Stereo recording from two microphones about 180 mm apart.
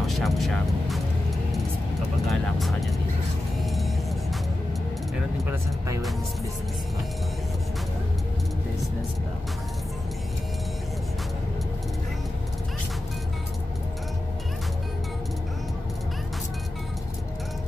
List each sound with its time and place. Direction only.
0.0 s speech: centre (ahead or behind)
2.2 s speech: centre (ahead or behind)
3.6 s music: centre (ahead or behind)
5.5 s speech: 15° right (ahead or behind)